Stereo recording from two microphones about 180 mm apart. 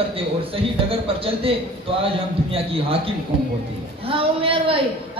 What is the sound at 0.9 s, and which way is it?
Speech, 30° right (ahead or behind).